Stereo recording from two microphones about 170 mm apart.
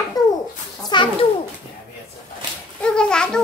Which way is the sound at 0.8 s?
30° left (ahead or behind).